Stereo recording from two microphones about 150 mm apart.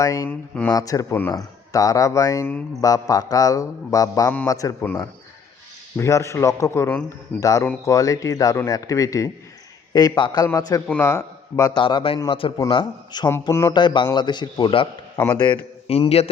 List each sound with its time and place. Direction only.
0.0 s speech: 20° left (ahead or behind)
0.3 s speech: 10° left (ahead or behind)
0.7 s speech: 25° left (ahead or behind)
6.0 s a man's voice: 20° left (ahead or behind)
13.5 s speech: 15° left (ahead or behind)
13.7 s a man's voice: 30° left (ahead or behind)